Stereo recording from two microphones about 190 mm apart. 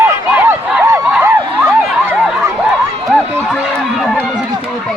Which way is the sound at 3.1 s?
Centre (ahead or behind).